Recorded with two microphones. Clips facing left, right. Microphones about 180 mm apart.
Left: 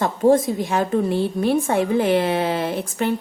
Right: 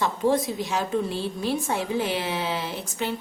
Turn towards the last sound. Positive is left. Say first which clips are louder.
# left 7 dB
turn(degrees=55)  # may be behind; listen again after turning